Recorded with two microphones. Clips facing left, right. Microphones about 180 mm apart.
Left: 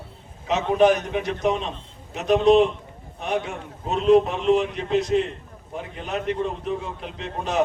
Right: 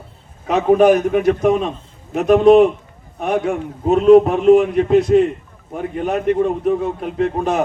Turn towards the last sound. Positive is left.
turn(degrees=-50)  # may be behind; listen again after turning